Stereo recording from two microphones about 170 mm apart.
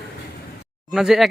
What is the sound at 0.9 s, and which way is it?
Speech, centre (ahead or behind).